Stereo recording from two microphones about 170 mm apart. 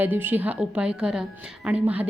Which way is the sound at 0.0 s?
10° right (ahead or behind).